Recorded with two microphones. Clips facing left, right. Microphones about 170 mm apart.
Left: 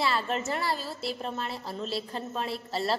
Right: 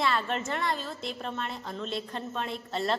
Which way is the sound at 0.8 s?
5° left (ahead or behind).